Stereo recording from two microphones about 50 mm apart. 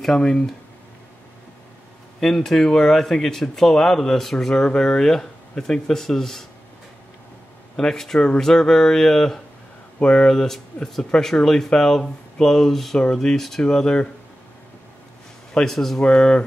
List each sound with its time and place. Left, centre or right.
0.0 s speech: centre
2.1 s speech: centre
7.7 s speech: centre
15.5 s speech: centre